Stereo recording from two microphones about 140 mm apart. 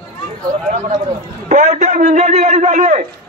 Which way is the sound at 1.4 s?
55° right (ahead or behind).